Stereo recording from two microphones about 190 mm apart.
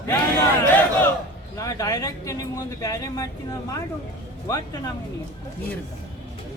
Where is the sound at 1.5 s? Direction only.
15° left (ahead or behind).